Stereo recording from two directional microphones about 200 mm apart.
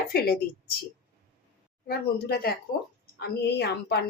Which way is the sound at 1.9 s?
50° left (ahead or behind).